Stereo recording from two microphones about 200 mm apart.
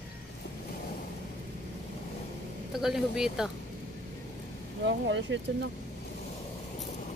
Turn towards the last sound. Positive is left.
turn(degrees=-65)  # may be behind; listen again after turning